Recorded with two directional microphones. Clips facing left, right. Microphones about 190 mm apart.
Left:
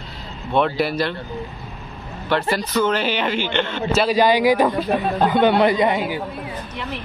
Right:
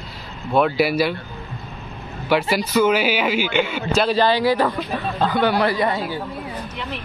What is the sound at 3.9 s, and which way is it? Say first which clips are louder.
A man's voice: left 1 dB; 10° left (ahead or behind).